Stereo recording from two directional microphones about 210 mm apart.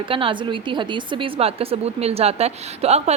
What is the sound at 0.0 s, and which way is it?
A woman's voice, 25° right (ahead or behind).